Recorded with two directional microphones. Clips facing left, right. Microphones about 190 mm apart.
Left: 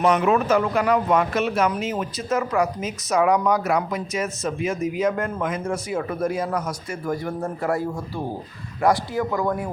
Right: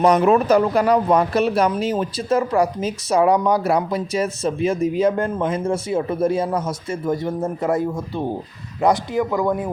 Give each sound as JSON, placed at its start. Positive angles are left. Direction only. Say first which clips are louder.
{"t": 0.0, "sound": "speech", "louder": "right 4 dB", "side_deg": -35}